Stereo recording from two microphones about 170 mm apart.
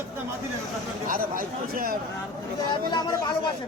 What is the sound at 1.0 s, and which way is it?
Speech, 55° right (ahead or behind).